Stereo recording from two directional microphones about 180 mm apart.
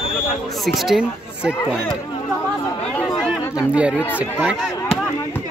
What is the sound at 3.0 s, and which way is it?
Speech, centre (ahead or behind).